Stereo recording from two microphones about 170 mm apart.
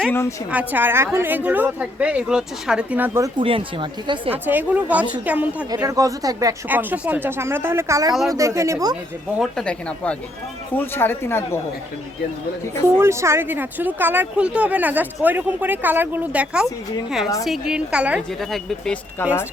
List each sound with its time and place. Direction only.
0.0 s speech: 15° left (ahead or behind)
0.7 s speech: 10° right (ahead or behind)
3.3 s speech: 30° right (ahead or behind)
4.3 s speech: 10° right (ahead or behind)
5.7 s speech: 20° right (ahead or behind)
9.4 s speech: 5° left (ahead or behind)
13.0 s speech: 15° right (ahead or behind); by 19.3 s centre (ahead or behind)